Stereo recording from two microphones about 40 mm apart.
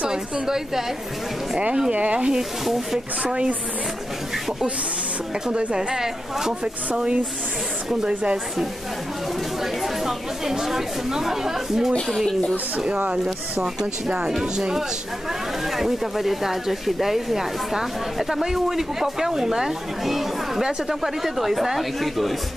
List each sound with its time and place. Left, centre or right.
0.1 s speech: centre
1.9 s speech: right
2.6 s speech: centre
5.5 s speech: right
5.8 s speech: centre
10.0 s speech: centre
13.2 s speech: centre
15.7 s speech: centre